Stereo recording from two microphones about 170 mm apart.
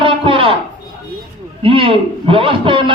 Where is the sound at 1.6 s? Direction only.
30° right (ahead or behind).